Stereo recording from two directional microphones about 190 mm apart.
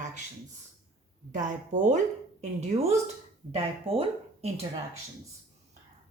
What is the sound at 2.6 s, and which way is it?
Speech, 30° right (ahead or behind).